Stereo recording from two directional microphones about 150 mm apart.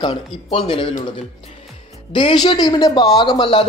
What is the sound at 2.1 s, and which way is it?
Speech, 30° left (ahead or behind).